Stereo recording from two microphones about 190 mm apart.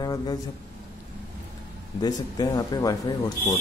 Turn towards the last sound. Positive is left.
turn(degrees=20)  # may be behind; listen again after turning